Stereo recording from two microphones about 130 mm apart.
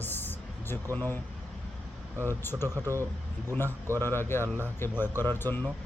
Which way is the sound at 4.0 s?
15° left (ahead or behind).